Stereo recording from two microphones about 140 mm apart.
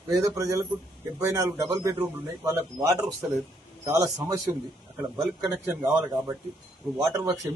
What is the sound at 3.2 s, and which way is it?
A man's voice, 10° right (ahead or behind).